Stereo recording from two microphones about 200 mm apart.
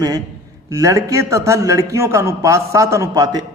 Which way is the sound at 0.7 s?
15° right (ahead or behind).